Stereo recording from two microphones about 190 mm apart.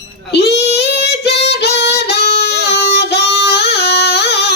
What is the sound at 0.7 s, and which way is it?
Child singing, 60° left (ahead or behind).